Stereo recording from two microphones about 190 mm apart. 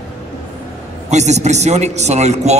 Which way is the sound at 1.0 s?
35° right (ahead or behind).